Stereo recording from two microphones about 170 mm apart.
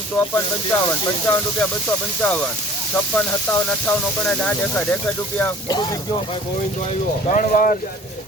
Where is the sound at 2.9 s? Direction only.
10° left (ahead or behind).